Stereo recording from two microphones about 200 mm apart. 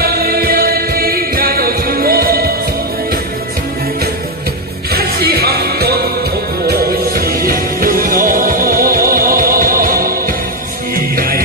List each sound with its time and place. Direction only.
0.0 s music: 50° right (ahead or behind)
4.9 s music: 50° right (ahead or behind)